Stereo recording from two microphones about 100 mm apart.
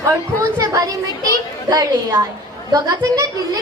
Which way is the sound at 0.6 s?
35° right (ahead or behind).